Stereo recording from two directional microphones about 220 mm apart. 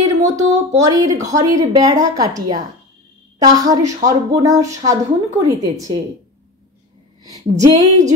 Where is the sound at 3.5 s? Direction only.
15° right (ahead or behind).